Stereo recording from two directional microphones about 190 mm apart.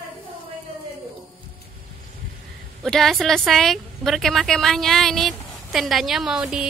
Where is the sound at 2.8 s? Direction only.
Centre (ahead or behind).